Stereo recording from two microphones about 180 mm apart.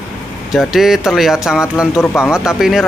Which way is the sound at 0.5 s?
Centre (ahead or behind).